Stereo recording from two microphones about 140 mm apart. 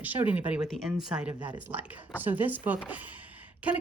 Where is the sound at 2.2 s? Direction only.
10° right (ahead or behind).